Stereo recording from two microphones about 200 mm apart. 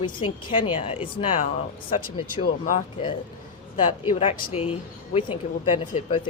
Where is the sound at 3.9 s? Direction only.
25° left (ahead or behind).